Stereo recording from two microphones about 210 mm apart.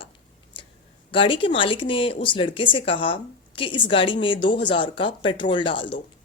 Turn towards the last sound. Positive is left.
turn(degrees=25)  # may be behind; listen again after turning